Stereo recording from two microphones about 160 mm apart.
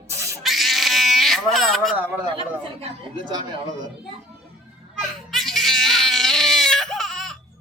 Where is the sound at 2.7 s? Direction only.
30° right (ahead or behind).